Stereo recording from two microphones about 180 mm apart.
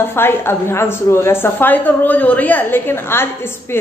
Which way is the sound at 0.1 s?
15° left (ahead or behind).